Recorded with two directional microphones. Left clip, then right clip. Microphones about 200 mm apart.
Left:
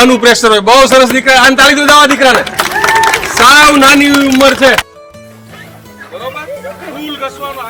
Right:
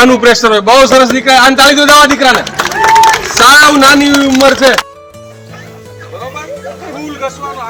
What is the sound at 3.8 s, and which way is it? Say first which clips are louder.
Speech: even; 10° left (ahead or behind).